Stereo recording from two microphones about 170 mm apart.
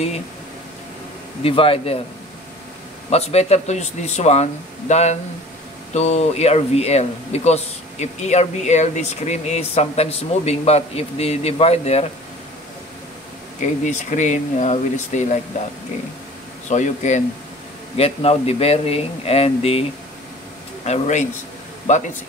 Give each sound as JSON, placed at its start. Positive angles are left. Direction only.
{"t": 1.4, "sound": "speech", "side_deg": 35}
{"t": 3.1, "sound": "speech", "side_deg": 40}
{"t": 13.8, "sound": "speech", "side_deg": 45}
{"t": 16.6, "sound": "speech", "side_deg": 45}
{"t": 20.8, "sound": "speech", "side_deg": 45}